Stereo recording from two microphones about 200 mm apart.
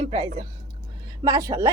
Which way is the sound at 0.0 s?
30° right (ahead or behind).